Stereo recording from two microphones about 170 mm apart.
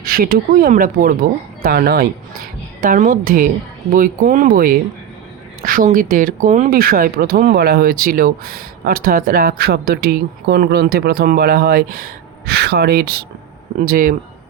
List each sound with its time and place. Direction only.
0.0 s speech: 60° right (ahead or behind)
6.7 s speech: 60° right (ahead or behind)
13.7 s speech: 55° right (ahead or behind)